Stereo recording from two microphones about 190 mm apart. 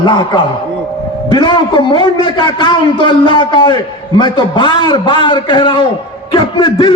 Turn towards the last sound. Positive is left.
turn(degrees=25)  # may be behind; listen again after turning